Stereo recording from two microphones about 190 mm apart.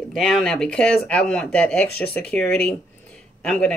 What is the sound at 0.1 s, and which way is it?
Speech, centre (ahead or behind).